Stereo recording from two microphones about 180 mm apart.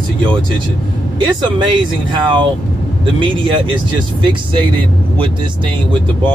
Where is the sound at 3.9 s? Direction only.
25° right (ahead or behind).